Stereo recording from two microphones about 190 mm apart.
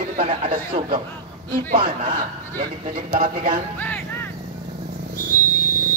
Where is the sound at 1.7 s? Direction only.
30° right (ahead or behind).